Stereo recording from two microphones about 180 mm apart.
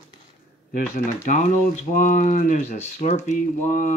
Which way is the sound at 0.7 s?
45° left (ahead or behind).